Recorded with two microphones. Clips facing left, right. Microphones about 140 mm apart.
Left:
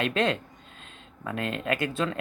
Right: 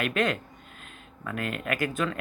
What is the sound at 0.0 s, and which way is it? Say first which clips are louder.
Speech: left 1 dB; 25° left (ahead or behind).